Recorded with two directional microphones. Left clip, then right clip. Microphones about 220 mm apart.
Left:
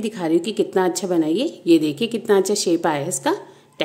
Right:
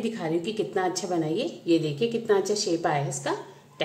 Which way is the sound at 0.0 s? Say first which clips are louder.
Left 7 dB; 50° left (ahead or behind).